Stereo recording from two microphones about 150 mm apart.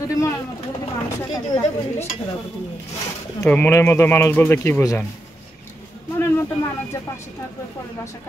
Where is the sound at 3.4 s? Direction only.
10° left (ahead or behind).